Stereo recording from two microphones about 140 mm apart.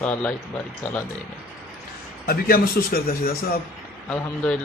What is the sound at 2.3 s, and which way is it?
A man's voice, 90° left.